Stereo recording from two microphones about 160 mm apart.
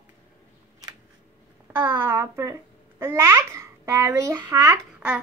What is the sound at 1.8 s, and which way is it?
A child's voice, 15° right (ahead or behind).